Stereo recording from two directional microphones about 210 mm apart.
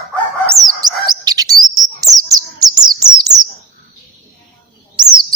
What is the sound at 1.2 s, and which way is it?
Chirp, 20° right (ahead or behind).